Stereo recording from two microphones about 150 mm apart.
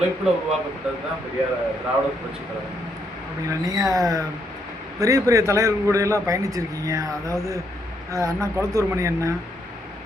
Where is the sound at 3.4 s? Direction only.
20° right (ahead or behind).